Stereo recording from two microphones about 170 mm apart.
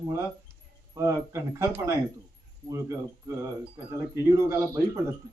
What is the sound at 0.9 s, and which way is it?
A man's voice, 15° right (ahead or behind).